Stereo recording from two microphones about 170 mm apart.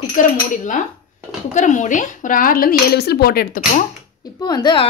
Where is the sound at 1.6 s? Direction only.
45° left (ahead or behind).